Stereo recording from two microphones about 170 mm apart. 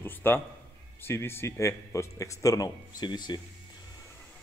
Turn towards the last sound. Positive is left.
turn(degrees=25)  # may be behind; listen again after turning